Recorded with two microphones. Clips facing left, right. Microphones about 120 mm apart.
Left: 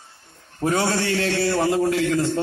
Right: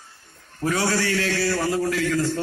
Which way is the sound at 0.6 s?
25° left (ahead or behind).